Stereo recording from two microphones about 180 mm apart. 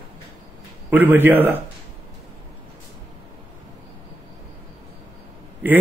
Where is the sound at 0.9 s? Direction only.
10° right (ahead or behind).